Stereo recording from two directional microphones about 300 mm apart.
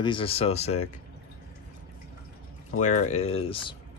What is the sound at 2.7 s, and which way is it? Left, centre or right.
Speech, left.